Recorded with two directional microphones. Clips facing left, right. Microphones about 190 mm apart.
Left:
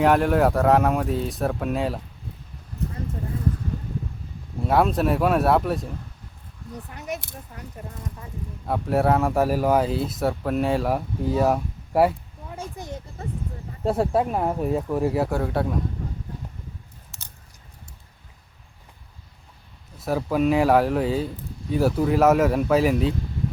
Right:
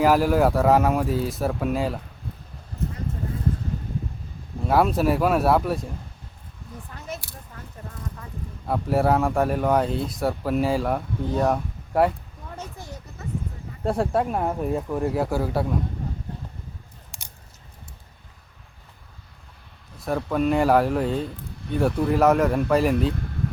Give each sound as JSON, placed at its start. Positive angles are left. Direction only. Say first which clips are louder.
{"t": 0.0, "sound": "speech", "louder": "even", "side_deg": 0}
{"t": 4.7, "sound": "speech", "louder": "even", "side_deg": 0}
{"t": 6.9, "sound": "speech", "louder": "left 3 dB", "side_deg": 20}
{"t": 8.6, "sound": "speech", "louder": "even", "side_deg": 0}
{"t": 12.5, "sound": "a sound", "louder": "left 4 dB", "side_deg": 20}
{"t": 13.2, "sound": "a sound", "louder": "even", "side_deg": 30}
{"t": 13.8, "sound": "speech", "louder": "left 1 dB", "side_deg": 0}
{"t": 17.1, "sound": "a sound", "louder": "left 1 dB", "side_deg": -15}
{"t": 20.1, "sound": "speech", "louder": "left 1 dB", "side_deg": 5}